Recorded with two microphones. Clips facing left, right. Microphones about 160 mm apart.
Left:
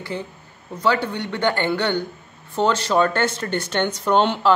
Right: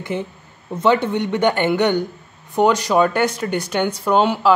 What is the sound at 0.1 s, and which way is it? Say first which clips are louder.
Speech: right 5 dB; 20° right (ahead or behind).